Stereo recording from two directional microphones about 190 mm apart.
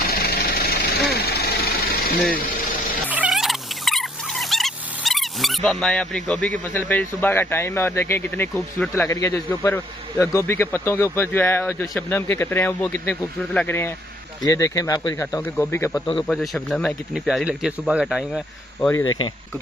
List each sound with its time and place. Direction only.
0.0 s vehicle: 55° left (ahead or behind)
3.1 s frog: 5° right (ahead or behind); by 8.5 s 10° left (ahead or behind)
8.5 s speech: 5° left (ahead or behind)
9.1 s a man's voice: 15° left (ahead or behind)
16.3 s speech: centre (ahead or behind)
18.8 s a man's voice: 10° left (ahead or behind)